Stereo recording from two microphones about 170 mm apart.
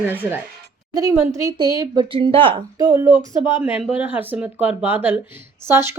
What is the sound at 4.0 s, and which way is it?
Speech, 10° right (ahead or behind).